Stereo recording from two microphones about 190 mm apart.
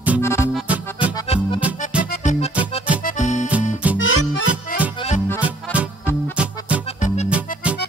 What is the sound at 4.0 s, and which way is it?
Music, 90° left.